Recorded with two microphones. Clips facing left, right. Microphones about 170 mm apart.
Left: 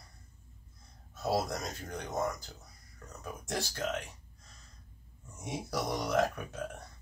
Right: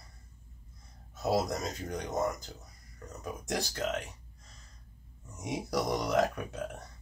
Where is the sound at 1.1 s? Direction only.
20° right (ahead or behind).